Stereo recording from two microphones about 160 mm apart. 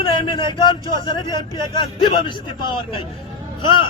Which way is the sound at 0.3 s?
30° left (ahead or behind).